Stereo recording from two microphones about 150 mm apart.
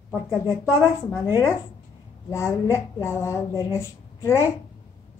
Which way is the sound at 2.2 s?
20° left (ahead or behind).